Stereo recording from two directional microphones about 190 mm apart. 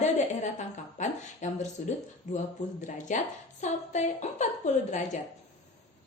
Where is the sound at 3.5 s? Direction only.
40° left (ahead or behind).